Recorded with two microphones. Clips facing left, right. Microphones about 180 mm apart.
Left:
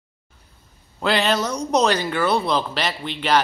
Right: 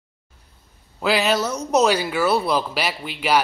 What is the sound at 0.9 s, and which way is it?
A woman's voice, 5° right (ahead or behind).